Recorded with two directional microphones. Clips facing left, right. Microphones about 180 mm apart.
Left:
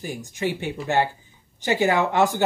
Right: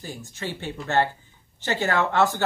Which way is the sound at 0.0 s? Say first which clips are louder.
Left 7 dB; 15° left (ahead or behind).